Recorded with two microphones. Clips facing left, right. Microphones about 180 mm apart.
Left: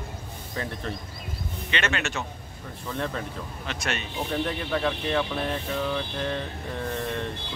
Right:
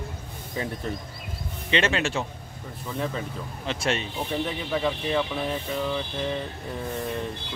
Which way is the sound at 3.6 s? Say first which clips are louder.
Right 5 dB; 30° right (ahead or behind).